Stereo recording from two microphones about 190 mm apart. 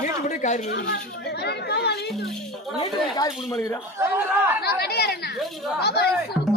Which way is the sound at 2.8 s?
20° left (ahead or behind).